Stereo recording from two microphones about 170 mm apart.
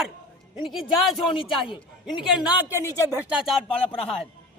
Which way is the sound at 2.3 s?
5° right (ahead or behind).